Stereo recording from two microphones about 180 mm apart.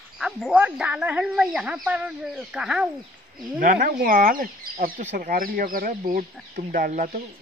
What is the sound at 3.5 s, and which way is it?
Speech, 55° right (ahead or behind).